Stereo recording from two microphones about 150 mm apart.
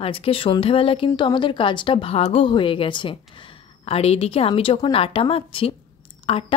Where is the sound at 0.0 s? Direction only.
40° left (ahead or behind).